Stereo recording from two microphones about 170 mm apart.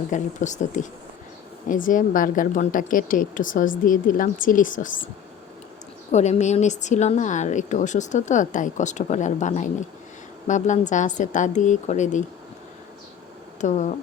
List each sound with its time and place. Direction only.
0.1 s speech: 45° left (ahead or behind)
6.1 s speech: 40° left (ahead or behind)
13.6 s speech: 45° left (ahead or behind)